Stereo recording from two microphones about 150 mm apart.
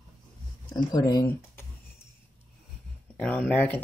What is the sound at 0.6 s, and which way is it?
Speech, 25° left (ahead or behind).